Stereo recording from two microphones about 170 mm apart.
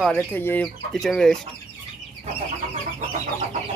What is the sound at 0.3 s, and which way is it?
Speech, 10° left (ahead or behind).